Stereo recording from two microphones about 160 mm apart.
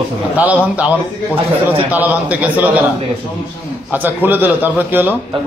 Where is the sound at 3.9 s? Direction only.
10° right (ahead or behind).